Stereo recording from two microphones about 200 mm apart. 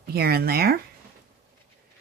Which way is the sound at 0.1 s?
50° right (ahead or behind).